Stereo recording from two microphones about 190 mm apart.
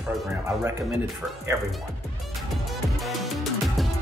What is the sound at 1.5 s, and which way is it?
Speech, 15° right (ahead or behind).